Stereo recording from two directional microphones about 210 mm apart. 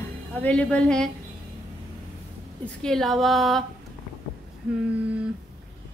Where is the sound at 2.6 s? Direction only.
5° left (ahead or behind).